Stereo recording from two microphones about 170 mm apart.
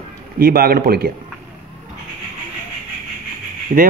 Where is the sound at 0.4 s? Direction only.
60° right (ahead or behind).